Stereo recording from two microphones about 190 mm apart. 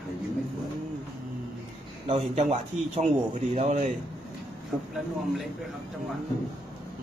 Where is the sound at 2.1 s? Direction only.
35° right (ahead or behind).